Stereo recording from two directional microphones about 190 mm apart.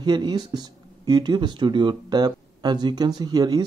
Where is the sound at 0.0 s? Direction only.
20° right (ahead or behind).